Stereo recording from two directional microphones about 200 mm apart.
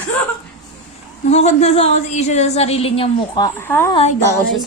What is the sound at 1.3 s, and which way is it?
A woman's voice, 35° left (ahead or behind).